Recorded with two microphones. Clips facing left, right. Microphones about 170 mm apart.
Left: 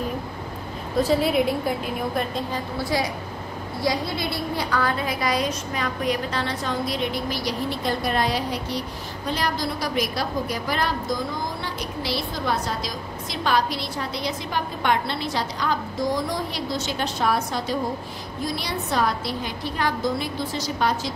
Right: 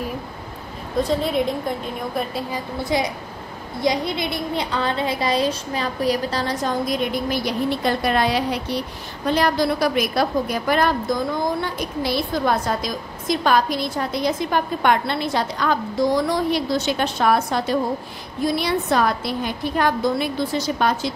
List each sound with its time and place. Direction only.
1.0 s a woman's voice: 5° left (ahead or behind)
2.8 s a woman's voice: 20° right (ahead or behind); by 21.1 s 55° right (ahead or behind)